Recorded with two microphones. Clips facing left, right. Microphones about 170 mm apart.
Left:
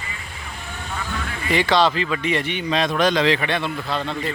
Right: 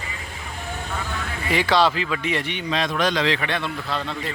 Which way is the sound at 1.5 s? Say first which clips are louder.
Left 1 dB; 5° right (ahead or behind).